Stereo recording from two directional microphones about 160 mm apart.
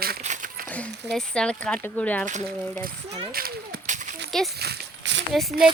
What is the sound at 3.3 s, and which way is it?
Speech, 65° right (ahead or behind).